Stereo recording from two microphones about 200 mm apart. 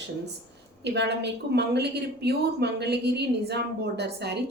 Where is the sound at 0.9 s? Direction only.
60° right (ahead or behind).